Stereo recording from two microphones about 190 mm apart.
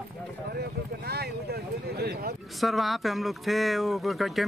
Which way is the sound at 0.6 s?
55° right (ahead or behind).